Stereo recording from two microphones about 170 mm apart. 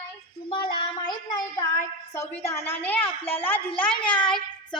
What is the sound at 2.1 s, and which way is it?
A woman's voice, 15° left (ahead or behind).